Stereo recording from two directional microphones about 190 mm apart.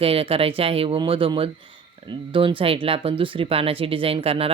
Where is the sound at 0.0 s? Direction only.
30° right (ahead or behind).